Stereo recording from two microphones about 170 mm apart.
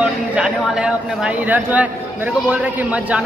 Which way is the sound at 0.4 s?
5° right (ahead or behind).